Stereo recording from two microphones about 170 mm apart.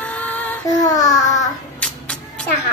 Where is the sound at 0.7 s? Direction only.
20° left (ahead or behind).